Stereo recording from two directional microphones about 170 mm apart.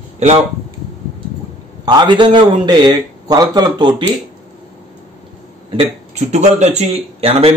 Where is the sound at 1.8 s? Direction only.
25° right (ahead or behind).